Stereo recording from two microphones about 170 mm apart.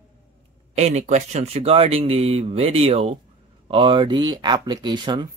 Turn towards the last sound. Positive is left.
turn(degrees=-25)  # may be behind; listen again after turning